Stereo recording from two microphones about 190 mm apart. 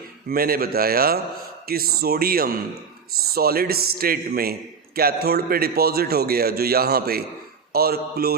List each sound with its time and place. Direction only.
0.3 s a man's voice: 50° right (ahead or behind)